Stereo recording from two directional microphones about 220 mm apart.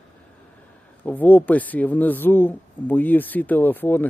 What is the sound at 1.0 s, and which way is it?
Speech, 5° left (ahead or behind).